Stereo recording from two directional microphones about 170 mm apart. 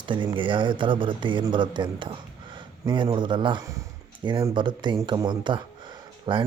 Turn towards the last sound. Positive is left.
turn(degrees=-30)  # may be behind; listen again after turning